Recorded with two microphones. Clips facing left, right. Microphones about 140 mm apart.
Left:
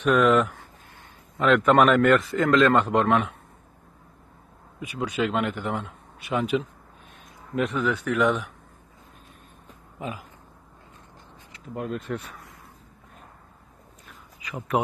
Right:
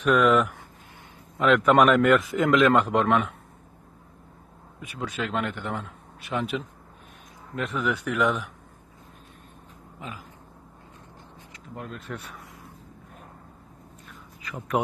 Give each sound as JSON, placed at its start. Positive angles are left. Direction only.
{"t": 0.1, "sound": "speech", "side_deg": 10}
{"t": 1.4, "sound": "speech", "side_deg": 0}
{"t": 2.3, "sound": "speech", "side_deg": -15}
{"t": 4.7, "sound": "speech", "side_deg": 0}
{"t": 7.9, "sound": "speech", "side_deg": -10}
{"t": 9.9, "sound": "speech", "side_deg": 20}
{"t": 11.7, "sound": "speech", "side_deg": 10}
{"t": 12.0, "sound": "speech", "side_deg": 0}